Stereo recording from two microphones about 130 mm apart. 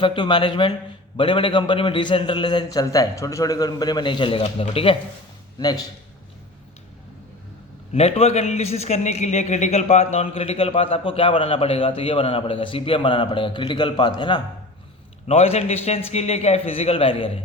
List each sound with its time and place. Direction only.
0.0 s a man's voice: 40° left (ahead or behind)
5.5 s a man's voice: 30° left (ahead or behind)
7.9 s a man's voice: 50° left (ahead or behind); by 14.4 s 35° left (ahead or behind)
15.3 s a man's voice: 55° left (ahead or behind)